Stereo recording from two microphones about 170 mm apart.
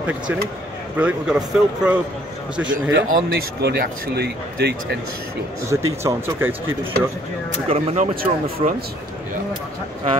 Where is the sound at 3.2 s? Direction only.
65° right (ahead or behind).